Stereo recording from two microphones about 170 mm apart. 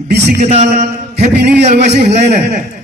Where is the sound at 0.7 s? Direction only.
75° right (ahead or behind).